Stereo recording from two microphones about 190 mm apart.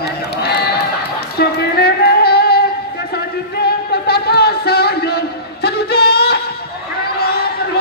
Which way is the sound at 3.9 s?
55° left (ahead or behind).